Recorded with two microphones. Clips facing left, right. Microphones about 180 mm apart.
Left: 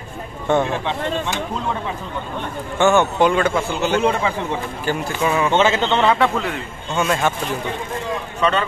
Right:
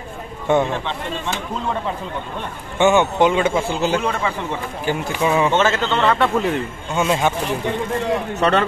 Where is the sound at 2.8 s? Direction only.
15° right (ahead or behind).